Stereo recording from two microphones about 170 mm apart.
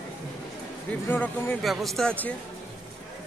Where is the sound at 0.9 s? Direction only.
10° left (ahead or behind).